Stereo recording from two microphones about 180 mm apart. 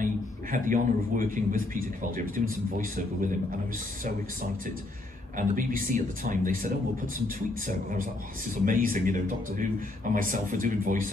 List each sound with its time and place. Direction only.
0.0 s a man's voice: 50° right (ahead or behind)
5.5 s a man's voice: 45° right (ahead or behind)